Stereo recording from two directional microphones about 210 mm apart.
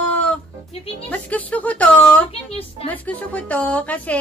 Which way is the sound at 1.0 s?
5° left (ahead or behind).